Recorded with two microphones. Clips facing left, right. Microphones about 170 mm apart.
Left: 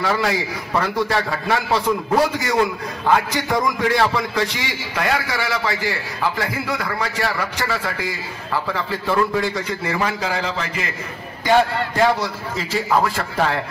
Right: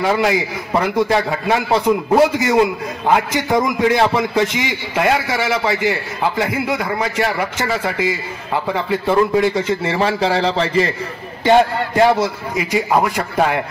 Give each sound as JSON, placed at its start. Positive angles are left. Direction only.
{"t": 0.0, "sound": "a man's voice", "side_deg": -20}
{"t": 11.4, "sound": "a man's voice", "side_deg": -20}